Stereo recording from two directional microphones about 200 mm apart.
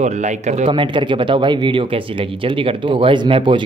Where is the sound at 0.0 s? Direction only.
35° right (ahead or behind).